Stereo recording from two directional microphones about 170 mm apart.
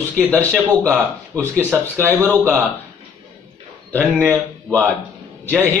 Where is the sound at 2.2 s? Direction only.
10° left (ahead or behind).